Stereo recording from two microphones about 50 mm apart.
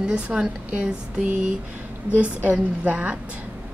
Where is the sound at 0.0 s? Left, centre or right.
Centre.